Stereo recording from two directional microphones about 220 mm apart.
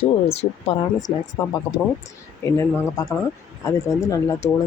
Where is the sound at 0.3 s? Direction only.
25° left (ahead or behind).